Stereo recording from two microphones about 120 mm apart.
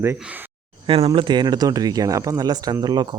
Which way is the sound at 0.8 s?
50° right (ahead or behind).